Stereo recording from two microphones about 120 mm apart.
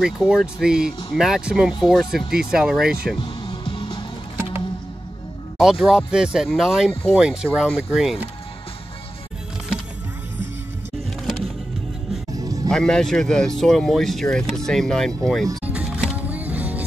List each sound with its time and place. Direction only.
0.0 s speech: centre (ahead or behind)
3.2 s music: 45° left (ahead or behind)
5.6 s speech: 5° right (ahead or behind)
12.6 s speech: 5° left (ahead or behind)
15.6 s music: 10° right (ahead or behind)